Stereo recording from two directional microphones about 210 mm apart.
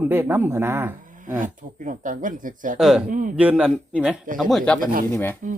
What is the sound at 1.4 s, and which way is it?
Speech, 40° right (ahead or behind).